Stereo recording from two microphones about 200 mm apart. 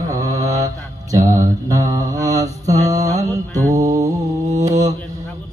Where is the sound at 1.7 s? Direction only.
15° right (ahead or behind).